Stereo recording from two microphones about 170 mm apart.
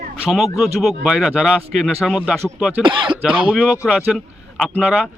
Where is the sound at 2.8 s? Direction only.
30° right (ahead or behind).